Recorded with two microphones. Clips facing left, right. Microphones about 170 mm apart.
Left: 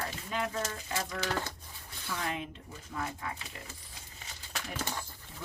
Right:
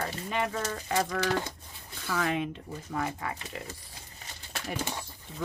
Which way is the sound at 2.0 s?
90° right.